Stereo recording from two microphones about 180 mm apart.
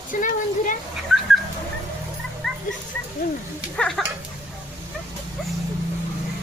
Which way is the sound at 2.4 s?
Centre (ahead or behind).